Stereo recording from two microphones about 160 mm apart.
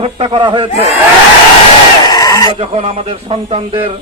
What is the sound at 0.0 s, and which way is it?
Speech, 35° right (ahead or behind).